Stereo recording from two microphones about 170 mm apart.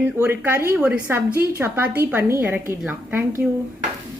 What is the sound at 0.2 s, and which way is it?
A woman's voice, 15° right (ahead or behind).